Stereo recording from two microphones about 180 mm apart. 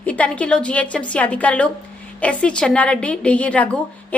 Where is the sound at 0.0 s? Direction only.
5° left (ahead or behind).